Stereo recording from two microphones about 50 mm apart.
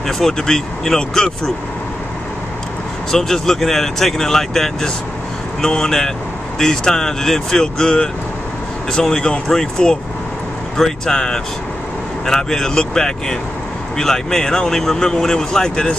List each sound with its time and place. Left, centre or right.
0.0 s speech: centre
3.1 s speech: centre